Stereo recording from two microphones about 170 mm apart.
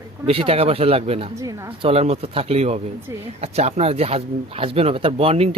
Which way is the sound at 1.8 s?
35° right (ahead or behind).